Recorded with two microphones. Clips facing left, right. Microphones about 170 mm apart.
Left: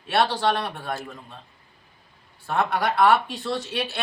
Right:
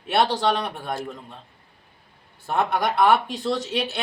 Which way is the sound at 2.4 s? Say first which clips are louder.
Right 1 dB; 20° right (ahead or behind).